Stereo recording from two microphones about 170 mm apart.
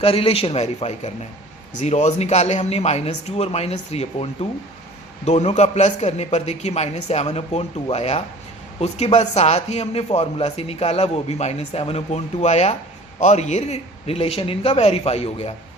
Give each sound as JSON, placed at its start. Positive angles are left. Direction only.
{"t": 0.0, "sound": "a man's voice", "side_deg": 35}